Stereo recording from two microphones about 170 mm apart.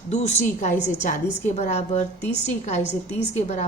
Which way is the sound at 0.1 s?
40° left (ahead or behind).